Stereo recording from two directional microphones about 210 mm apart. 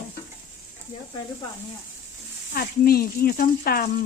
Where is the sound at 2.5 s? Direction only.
45° left (ahead or behind).